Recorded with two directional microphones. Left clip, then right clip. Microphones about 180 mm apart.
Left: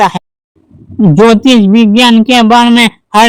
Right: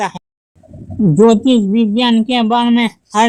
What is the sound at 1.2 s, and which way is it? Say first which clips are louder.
Speech: left 5 dB; 40° left (ahead or behind).